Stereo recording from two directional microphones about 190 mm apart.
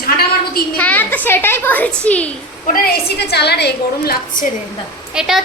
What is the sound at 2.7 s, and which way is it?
A woman's voice, 55° left (ahead or behind).